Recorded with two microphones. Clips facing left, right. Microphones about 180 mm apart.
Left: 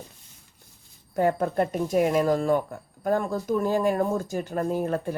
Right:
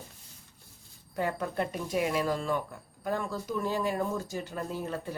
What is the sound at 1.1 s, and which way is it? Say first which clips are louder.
Speech: left 8 dB; 45° left (ahead or behind).